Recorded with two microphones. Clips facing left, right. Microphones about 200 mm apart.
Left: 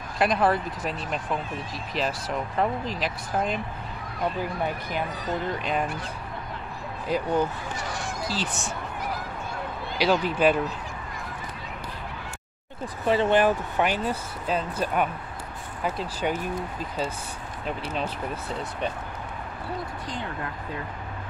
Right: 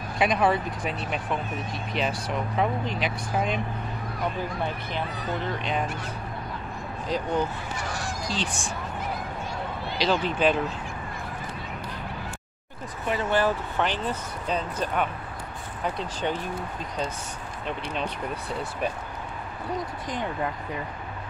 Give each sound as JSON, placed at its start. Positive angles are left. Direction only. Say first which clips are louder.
{"t": 0.2, "sound": "speech", "louder": "even", "side_deg": 0}
{"t": 5.6, "sound": "speech", "louder": "left 1 dB", "side_deg": 5}
{"t": 7.1, "sound": "speech", "louder": "left 2 dB", "side_deg": 10}
{"t": 9.9, "sound": "speech", "louder": "left 2 dB", "side_deg": 10}
{"t": 13.0, "sound": "speech", "louder": "left 6 dB", "side_deg": 30}
{"t": 13.3, "sound": "speech", "louder": "left 3 dB", "side_deg": 15}
{"t": 17.6, "sound": "speech", "louder": "left 1 dB", "side_deg": 5}